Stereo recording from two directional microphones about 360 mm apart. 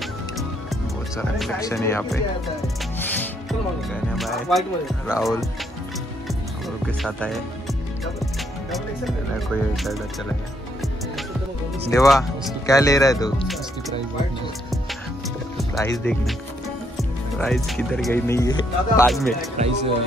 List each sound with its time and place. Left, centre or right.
0.0 s speech: centre
6.9 s speech: centre
11.9 s speech: centre
14.7 s music: centre
16.0 s speech: centre
19.6 s speech: centre